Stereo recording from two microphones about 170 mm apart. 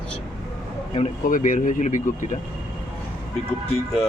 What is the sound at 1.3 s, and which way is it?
Speech, 50° left (ahead or behind).